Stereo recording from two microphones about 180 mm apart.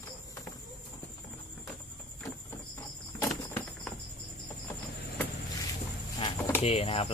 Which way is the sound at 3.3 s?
5° left (ahead or behind).